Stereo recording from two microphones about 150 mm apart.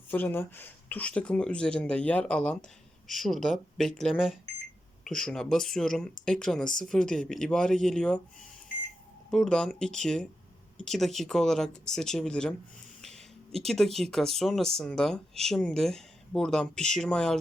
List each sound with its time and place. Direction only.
0.1 s speech: 15° left (ahead or behind)
9.3 s speech: 5° left (ahead or behind)